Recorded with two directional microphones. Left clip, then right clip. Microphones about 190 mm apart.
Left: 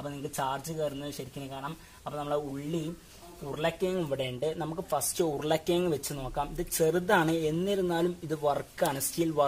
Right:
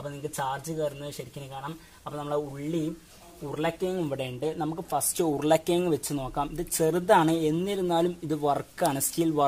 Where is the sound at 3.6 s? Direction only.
25° right (ahead or behind).